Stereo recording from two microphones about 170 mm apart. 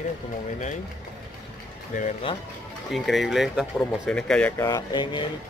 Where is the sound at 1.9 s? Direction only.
45° left (ahead or behind).